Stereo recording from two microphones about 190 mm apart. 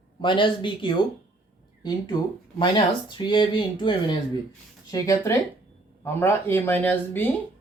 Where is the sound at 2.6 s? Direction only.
25° left (ahead or behind).